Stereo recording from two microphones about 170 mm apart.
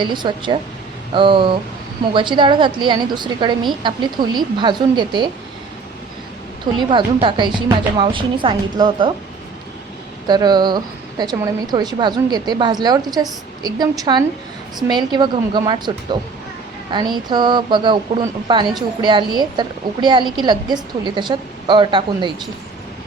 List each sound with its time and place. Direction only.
0.0 s a woman's voice: 25° right (ahead or behind)
6.7 s a woman's voice: 30° right (ahead or behind)
10.2 s a woman's voice: 25° right (ahead or behind)
16.9 s a woman's voice: 25° right (ahead or behind)